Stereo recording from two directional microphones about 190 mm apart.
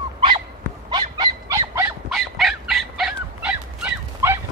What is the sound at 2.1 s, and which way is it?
Dog, centre (ahead or behind).